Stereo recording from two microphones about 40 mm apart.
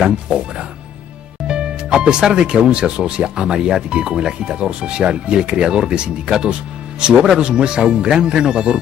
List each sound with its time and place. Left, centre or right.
1.5 s speech: right